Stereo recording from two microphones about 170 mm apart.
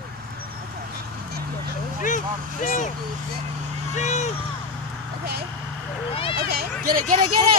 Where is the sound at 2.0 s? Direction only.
50° left (ahead or behind).